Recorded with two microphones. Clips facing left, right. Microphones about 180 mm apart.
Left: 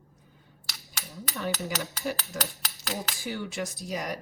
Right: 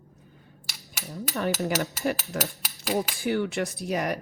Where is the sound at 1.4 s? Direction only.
60° right (ahead or behind).